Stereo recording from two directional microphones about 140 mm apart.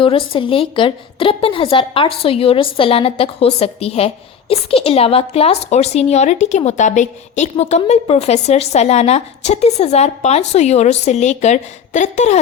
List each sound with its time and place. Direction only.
0.0 s a woman's voice: 40° left (ahead or behind); by 12.4 s 55° left (ahead or behind)